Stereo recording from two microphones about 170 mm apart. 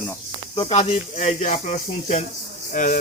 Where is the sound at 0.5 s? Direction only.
35° left (ahead or behind).